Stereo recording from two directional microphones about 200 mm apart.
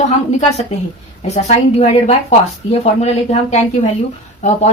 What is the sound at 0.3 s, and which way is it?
Speech, 35° left (ahead or behind).